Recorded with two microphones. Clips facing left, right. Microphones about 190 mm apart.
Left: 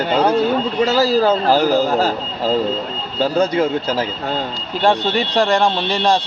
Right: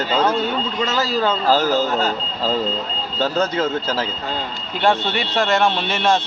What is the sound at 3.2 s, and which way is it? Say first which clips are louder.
Speech: left 4 dB; 15° left (ahead or behind).